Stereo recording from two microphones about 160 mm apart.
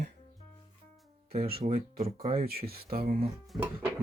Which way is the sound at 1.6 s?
65° right (ahead or behind).